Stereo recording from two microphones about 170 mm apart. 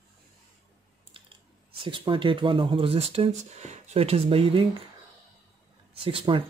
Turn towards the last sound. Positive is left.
turn(degrees=-30)  # may be behind; listen again after turning